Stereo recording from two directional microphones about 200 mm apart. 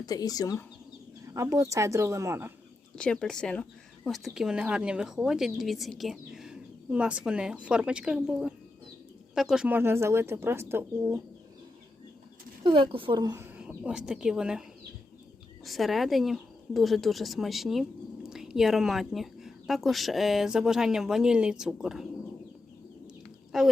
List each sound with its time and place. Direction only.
0.0 s speech: 20° left (ahead or behind)
1.3 s speech: 15° right (ahead or behind)
2.9 s speech: 5° left (ahead or behind); by 11.2 s 10° right (ahead or behind)
12.6 s speech: 25° right (ahead or behind); by 14.6 s 5° right (ahead or behind)
15.6 s speech: centre (ahead or behind)
23.5 s speech: centre (ahead or behind)